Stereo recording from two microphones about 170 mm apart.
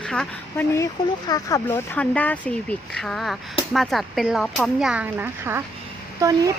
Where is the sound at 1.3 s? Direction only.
20° left (ahead or behind).